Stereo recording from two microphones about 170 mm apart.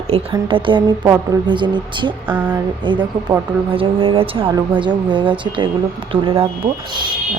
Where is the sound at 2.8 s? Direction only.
30° right (ahead or behind).